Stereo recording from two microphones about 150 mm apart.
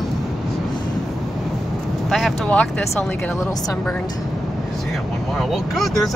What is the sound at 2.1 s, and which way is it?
Speech, centre (ahead or behind).